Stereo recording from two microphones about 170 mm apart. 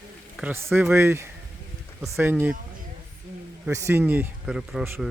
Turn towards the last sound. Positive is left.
turn(degrees=0)  # may be behind; listen again after turning